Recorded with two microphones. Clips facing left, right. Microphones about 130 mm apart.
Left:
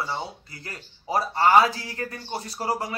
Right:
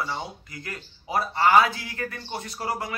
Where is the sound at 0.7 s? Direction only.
35° left (ahead or behind).